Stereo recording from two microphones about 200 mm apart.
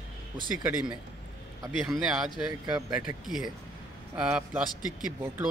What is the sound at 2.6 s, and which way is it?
Speech, 20° right (ahead or behind).